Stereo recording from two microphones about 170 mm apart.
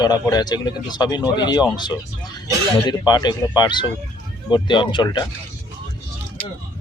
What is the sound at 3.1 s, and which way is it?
Speech, 25° left (ahead or behind).